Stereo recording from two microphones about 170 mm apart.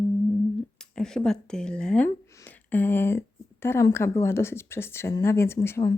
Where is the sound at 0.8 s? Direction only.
5° left (ahead or behind).